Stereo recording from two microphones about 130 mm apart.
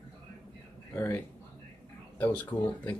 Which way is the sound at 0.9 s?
20° left (ahead or behind).